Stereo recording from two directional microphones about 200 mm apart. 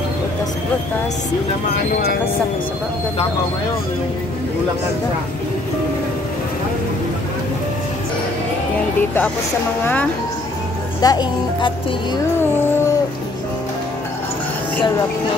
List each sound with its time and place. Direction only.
11.0 s speech: 20° left (ahead or behind)